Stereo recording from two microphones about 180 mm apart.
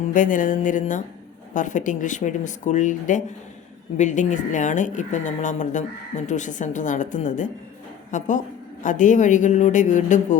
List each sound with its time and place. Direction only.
0.1 s speech: 45° left (ahead or behind)